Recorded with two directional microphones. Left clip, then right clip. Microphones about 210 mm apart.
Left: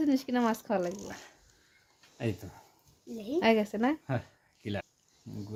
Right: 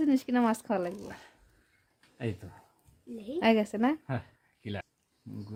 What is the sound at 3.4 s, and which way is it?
Speech, centre (ahead or behind).